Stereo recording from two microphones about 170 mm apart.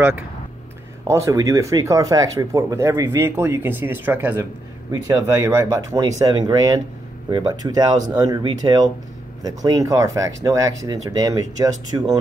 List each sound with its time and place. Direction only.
1.0 s speech: 20° right (ahead or behind)